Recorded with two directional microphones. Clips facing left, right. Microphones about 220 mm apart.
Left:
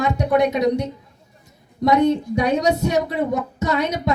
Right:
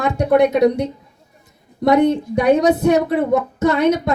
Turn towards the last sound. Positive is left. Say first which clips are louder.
# right 6 dB
turn(degrees=-55)  # may be behind; listen again after turning